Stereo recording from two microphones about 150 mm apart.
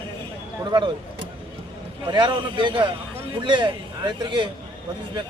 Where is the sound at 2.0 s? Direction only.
30° right (ahead or behind).